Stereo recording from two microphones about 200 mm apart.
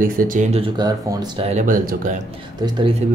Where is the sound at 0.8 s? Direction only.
20° right (ahead or behind).